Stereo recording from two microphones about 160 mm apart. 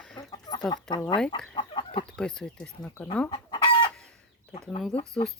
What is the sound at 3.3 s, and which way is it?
Chicken, 30° left (ahead or behind).